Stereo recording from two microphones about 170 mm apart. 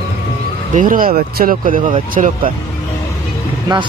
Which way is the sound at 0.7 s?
55° right (ahead or behind).